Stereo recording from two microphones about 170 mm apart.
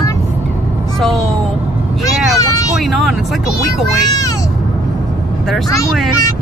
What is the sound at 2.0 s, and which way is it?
Vehicle, 20° left (ahead or behind).